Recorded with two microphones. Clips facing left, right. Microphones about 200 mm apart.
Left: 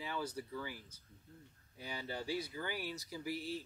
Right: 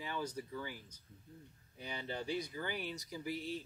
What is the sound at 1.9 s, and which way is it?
Speech, 20° right (ahead or behind).